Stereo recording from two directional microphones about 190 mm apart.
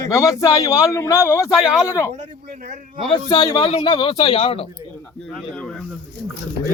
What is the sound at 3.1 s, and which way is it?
A man's voice, 20° left (ahead or behind).